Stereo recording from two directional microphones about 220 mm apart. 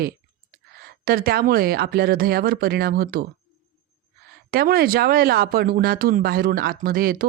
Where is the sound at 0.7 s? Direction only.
45° right (ahead or behind).